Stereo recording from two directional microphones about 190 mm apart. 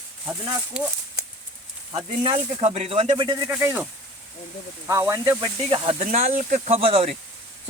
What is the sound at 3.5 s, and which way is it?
Speech, 10° right (ahead or behind).